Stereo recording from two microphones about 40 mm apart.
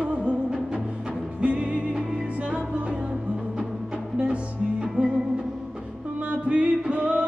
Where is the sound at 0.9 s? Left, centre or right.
Right.